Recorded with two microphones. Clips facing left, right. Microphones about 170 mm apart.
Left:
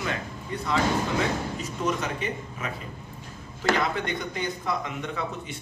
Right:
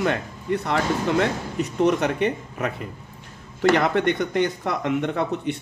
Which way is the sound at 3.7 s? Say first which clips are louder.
Right 5 dB; 70° right (ahead or behind).